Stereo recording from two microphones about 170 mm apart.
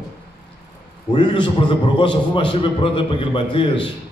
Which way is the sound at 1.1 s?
30° left (ahead or behind).